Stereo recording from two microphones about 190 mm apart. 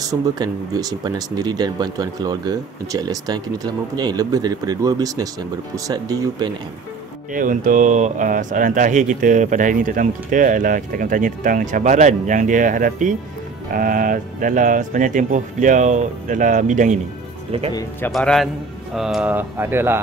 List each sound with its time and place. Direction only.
0.0 s speech: 20° right (ahead or behind)
7.3 s speech: 45° right (ahead or behind)
18.1 s a man's voice: centre (ahead or behind)